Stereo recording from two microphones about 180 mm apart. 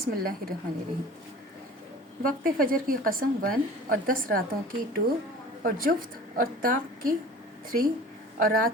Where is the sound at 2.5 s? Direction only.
50° right (ahead or behind).